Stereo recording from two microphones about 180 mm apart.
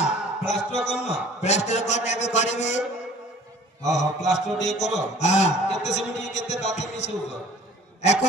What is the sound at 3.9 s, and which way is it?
A man's voice, 40° left (ahead or behind).